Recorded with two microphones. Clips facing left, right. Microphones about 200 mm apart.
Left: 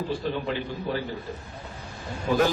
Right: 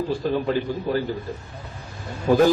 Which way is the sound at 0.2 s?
45° right (ahead or behind).